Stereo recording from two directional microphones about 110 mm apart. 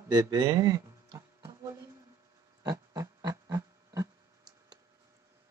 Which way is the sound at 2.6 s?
35° right (ahead or behind).